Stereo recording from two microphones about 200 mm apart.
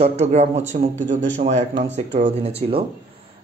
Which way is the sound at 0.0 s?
30° right (ahead or behind).